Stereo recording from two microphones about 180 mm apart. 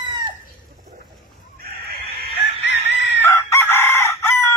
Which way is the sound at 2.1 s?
70° left (ahead or behind).